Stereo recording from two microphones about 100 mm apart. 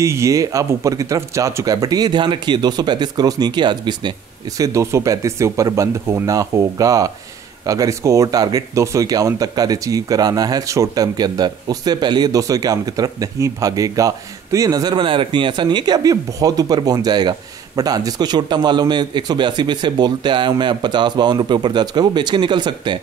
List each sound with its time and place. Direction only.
0.0 s speech: 30° right (ahead or behind); by 4.1 s 50° right (ahead or behind)
4.6 s speech: 30° right (ahead or behind); by 22.9 s 50° right (ahead or behind)